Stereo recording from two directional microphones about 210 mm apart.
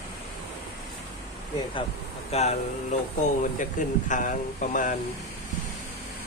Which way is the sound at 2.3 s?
30° left (ahead or behind).